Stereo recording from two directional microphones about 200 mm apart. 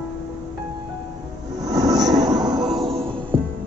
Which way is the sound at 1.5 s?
20° right (ahead or behind).